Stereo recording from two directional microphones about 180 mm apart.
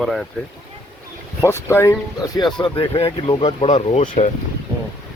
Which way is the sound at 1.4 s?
15° left (ahead or behind).